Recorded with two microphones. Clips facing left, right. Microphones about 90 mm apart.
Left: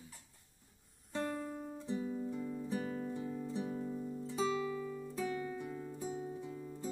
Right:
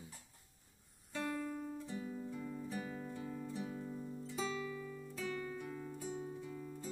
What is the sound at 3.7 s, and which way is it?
Music, 5° left (ahead or behind).